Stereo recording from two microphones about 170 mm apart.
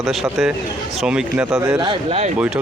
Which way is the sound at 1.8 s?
30° right (ahead or behind).